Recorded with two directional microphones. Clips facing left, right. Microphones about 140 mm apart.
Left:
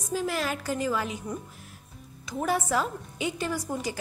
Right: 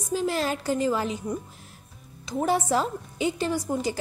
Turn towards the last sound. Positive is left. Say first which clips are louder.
# right 4 dB
turn(degrees=-25)  # may be behind; listen again after turning